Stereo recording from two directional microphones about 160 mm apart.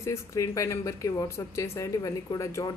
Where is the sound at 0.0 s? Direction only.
20° left (ahead or behind).